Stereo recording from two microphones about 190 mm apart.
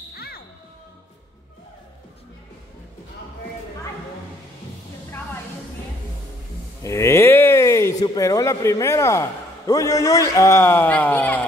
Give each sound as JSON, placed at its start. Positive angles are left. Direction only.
{"t": 0.1, "sound": "music", "side_deg": 55}
{"t": 6.8, "sound": "speech", "side_deg": 15}